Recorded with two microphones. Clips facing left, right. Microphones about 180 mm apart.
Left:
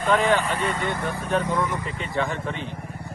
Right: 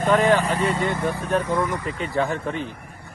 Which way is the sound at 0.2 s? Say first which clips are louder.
Right 3 dB; 40° right (ahead or behind).